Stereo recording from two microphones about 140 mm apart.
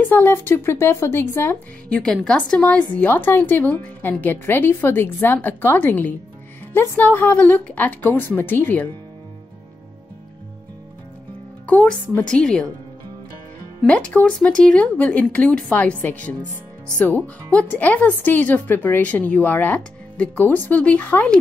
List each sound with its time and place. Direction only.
0.0 s a woman's voice: 15° left (ahead or behind)
11.6 s a woman's voice: 10° left (ahead or behind)
13.8 s a woman's voice: 10° left (ahead or behind)